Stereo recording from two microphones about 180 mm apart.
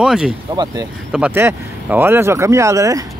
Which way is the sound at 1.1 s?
10° right (ahead or behind).